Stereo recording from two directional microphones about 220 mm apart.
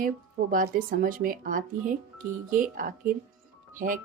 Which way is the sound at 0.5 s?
40° right (ahead or behind).